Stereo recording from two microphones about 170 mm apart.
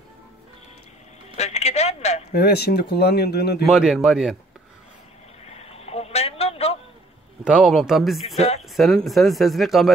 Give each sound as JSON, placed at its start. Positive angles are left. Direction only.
{"t": 1.3, "sound": "a man's voice", "side_deg": 40}
{"t": 2.3, "sound": "speech", "side_deg": 70}
{"t": 3.6, "sound": "speech", "side_deg": 0}
{"t": 5.5, "sound": "a sound", "side_deg": 35}
{"t": 7.4, "sound": "speech", "side_deg": -5}
{"t": 8.4, "sound": "speech", "side_deg": 40}
{"t": 8.6, "sound": "speech", "side_deg": 0}